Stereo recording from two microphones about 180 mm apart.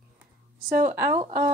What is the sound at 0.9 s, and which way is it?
Speech, 15° right (ahead or behind).